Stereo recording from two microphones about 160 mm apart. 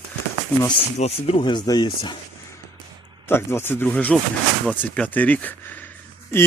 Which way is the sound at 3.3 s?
15° left (ahead or behind).